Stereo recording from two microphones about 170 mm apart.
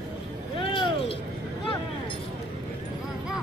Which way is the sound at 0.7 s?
30° left (ahead or behind).